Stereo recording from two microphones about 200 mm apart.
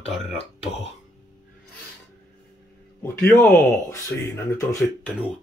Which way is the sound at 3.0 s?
10° left (ahead or behind).